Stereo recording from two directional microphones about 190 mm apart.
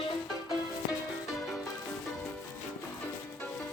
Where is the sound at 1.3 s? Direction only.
Centre (ahead or behind).